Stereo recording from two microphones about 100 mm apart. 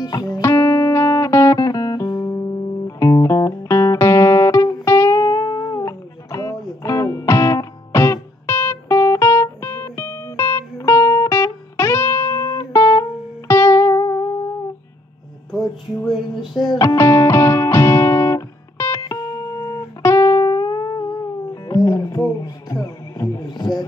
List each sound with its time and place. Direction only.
0.0 s music: 40° left (ahead or behind); by 12.4 s 25° left (ahead or behind)
12.4 s music: 40° left (ahead or behind)
14.0 s music: 40° left (ahead or behind)
16.1 s music: centre (ahead or behind)
16.7 s music: 30° left (ahead or behind)